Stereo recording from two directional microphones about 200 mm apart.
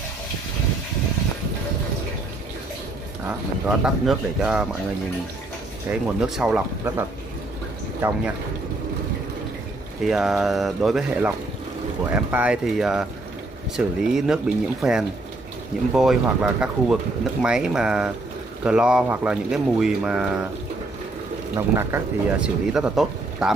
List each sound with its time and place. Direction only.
3.3 s speech: 5° right (ahead or behind)
5.9 s speech: 5° right (ahead or behind)
10.0 s speech: centre (ahead or behind)
21.5 s speech: 10° right (ahead or behind)